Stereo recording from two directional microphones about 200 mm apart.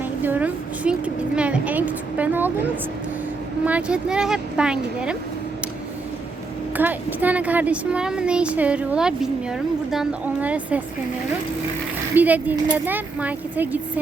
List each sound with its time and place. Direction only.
0.2 s a woman's voice: 10° right (ahead or behind)
3.7 s speech: 5° right (ahead or behind)
6.7 s speech: 10° right (ahead or behind)
12.1 s speech: 10° right (ahead or behind)